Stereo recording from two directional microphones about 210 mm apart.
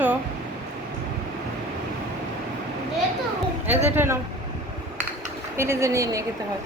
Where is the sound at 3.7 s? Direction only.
30° right (ahead or behind).